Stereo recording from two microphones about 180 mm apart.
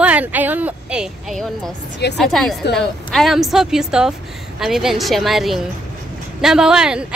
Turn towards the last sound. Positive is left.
turn(degrees=-5)  # may be behind; listen again after turning